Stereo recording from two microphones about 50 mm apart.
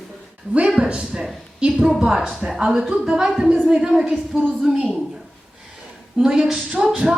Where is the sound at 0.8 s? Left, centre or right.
Right.